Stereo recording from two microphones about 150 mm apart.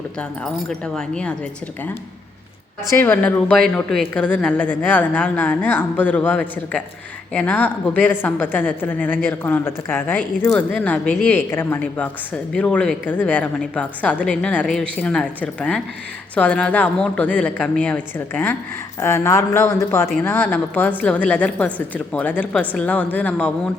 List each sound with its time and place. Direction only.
0.2 s speech: 5° left (ahead or behind)
2.9 s a woman's voice: 15° left (ahead or behind)